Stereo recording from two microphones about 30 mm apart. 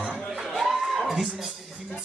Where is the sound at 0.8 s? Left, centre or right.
Centre.